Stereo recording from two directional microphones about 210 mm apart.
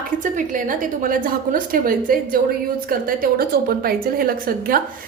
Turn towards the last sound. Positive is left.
turn(degrees=-45)  # may be behind; listen again after turning